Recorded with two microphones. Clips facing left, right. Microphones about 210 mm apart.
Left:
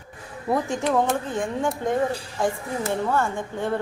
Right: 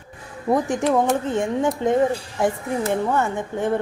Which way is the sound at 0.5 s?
15° right (ahead or behind).